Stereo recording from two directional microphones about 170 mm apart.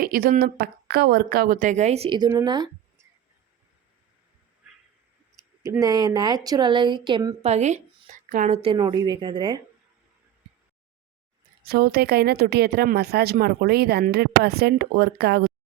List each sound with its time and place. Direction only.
0.0 s a woman's voice: 60° right (ahead or behind); by 2.3 s 25° right (ahead or behind)
2.3 s a sound: 25° right (ahead or behind)
4.7 s a sound: 5° right (ahead or behind)
5.8 s a woman's voice: 25° right (ahead or behind)
7.4 s a woman's voice: 40° right (ahead or behind)
8.6 s a woman's voice: 25° right (ahead or behind)
11.6 s a woman's voice: 65° right (ahead or behind)